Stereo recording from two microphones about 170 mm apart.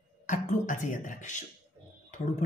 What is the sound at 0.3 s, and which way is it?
Speech, 45° left (ahead or behind).